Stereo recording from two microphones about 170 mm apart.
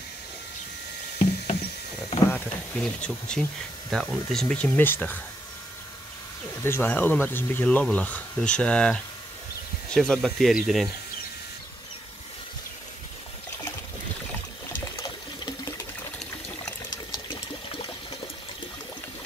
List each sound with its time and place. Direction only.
2.3 s speech: 5° left (ahead or behind)
6.6 s speech: 15° left (ahead or behind)
15.0 s water: 25° left (ahead or behind)